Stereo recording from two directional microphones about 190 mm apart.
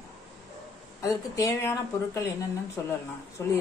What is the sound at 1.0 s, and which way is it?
A woman's voice, 15° left (ahead or behind).